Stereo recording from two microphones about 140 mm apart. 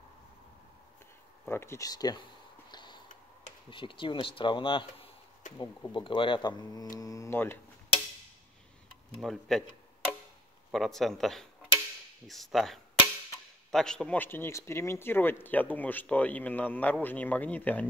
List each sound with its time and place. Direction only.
1.5 s speech: 20° left (ahead or behind)
2.7 s a sound: 35° left (ahead or behind)
3.7 s speech: 35° left (ahead or behind); by 7.5 s 15° left (ahead or behind)
9.2 s speech: centre (ahead or behind)
10.7 s a man's voice: centre (ahead or behind)